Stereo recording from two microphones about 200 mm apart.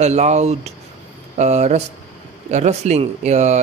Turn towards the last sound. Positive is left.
turn(degrees=-35)  # may be behind; listen again after turning